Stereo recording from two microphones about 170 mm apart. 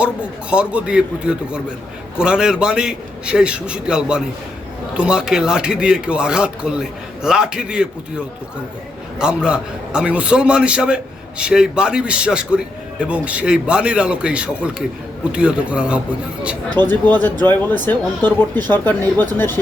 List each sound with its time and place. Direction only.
0.5 s a man's voice: 5° right (ahead or behind)
9.1 s a man's voice: 5° right (ahead or behind)
16.6 s speech: 25° right (ahead or behind)
17.5 s speech: 10° left (ahead or behind)